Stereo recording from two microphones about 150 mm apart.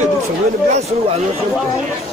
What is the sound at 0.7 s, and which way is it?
Speech, 45° right (ahead or behind).